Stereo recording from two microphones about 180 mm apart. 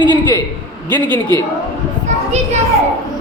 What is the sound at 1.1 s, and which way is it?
Speech, 20° left (ahead or behind).